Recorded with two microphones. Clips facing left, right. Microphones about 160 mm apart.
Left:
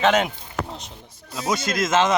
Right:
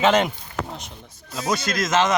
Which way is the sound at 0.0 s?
Centre (ahead or behind).